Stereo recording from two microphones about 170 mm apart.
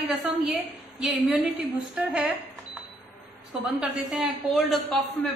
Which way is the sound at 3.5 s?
5° right (ahead or behind).